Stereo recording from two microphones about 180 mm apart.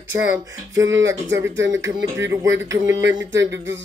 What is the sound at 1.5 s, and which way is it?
Speech, 90° right.